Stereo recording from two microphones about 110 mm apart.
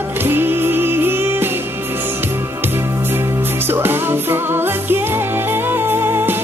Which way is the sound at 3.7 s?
20° right (ahead or behind).